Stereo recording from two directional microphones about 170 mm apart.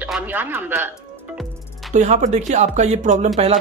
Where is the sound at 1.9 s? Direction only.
45° right (ahead or behind).